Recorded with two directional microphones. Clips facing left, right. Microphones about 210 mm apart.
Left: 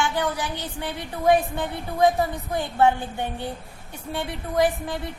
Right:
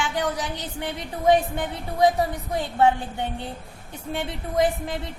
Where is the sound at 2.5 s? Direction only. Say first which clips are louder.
Even; 20° right (ahead or behind).